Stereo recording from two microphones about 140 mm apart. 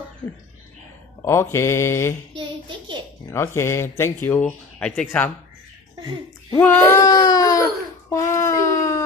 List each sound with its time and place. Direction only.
1.2 s mantra: 20° left (ahead or behind)
2.3 s a child's voice: 35° right (ahead or behind)
3.3 s speech: 20° left (ahead or behind)
6.6 s speech: 15° left (ahead or behind)
8.1 s a sound: 20° left (ahead or behind)